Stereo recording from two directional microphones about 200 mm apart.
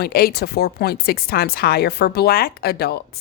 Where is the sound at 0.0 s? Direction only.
50° left (ahead or behind).